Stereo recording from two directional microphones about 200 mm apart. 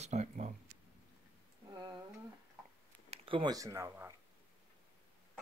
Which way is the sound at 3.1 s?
25° right (ahead or behind).